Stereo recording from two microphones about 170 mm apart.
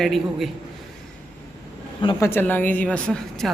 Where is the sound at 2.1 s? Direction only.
15° left (ahead or behind).